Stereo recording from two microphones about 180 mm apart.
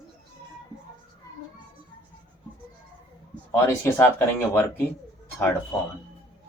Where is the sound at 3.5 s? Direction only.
10° left (ahead or behind).